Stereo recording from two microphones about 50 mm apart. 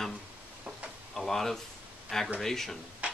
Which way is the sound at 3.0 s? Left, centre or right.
Right.